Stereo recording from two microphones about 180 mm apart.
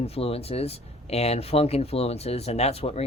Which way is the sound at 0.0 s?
35° left (ahead or behind).